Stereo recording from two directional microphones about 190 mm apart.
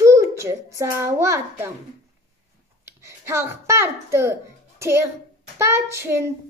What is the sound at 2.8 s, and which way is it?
A child's voice, 15° right (ahead or behind).